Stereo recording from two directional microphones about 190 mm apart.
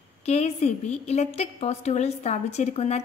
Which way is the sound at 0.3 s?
35° left (ahead or behind).